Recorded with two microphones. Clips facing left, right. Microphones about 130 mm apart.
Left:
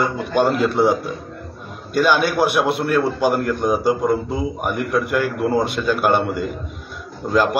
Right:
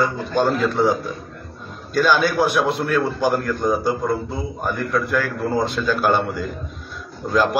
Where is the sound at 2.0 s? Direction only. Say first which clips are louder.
Left 1 dB; 10° left (ahead or behind).